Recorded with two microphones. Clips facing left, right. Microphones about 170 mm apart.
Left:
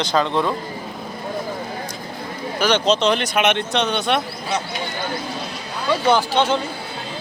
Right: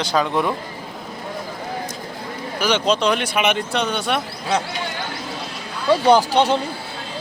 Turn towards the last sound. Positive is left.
turn(degrees=-35)  # may be behind; listen again after turning